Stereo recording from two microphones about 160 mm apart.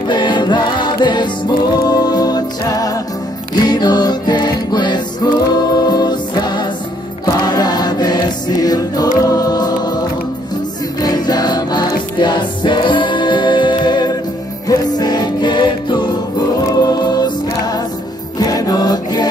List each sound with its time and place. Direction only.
0.1 s music: 30° left (ahead or behind)
7.2 s choir: 25° left (ahead or behind)
9.3 s music: 25° left (ahead or behind)
16.6 s choir: 25° left (ahead or behind)
18.4 s music: 25° left (ahead or behind)